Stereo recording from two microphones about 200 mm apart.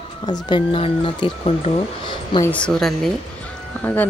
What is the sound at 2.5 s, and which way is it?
Speech, 5° left (ahead or behind).